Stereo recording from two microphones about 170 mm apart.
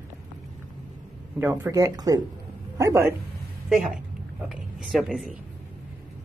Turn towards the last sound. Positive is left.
turn(degrees=0)  # may be behind; listen again after turning